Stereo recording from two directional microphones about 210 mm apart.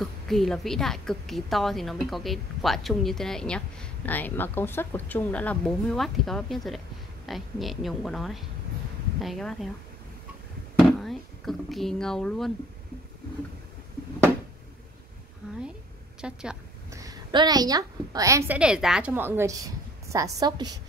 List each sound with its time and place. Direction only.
0.0 s a woman's voice: centre (ahead or behind)
10.8 s speech: centre (ahead or behind)
16.2 s a woman's voice: 5° right (ahead or behind)
16.9 s a woman's voice: 15° right (ahead or behind)